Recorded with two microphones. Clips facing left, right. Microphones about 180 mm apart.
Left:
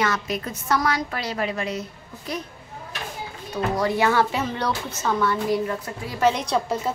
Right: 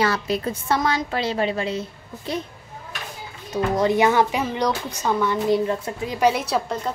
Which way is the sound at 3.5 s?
20° right (ahead or behind).